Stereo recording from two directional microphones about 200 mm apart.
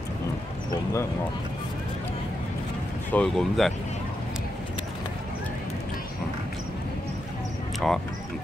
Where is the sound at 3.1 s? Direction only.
5° left (ahead or behind).